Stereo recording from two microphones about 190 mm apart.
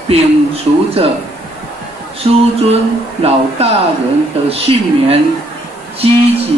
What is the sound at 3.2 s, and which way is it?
Speech, 30° right (ahead or behind).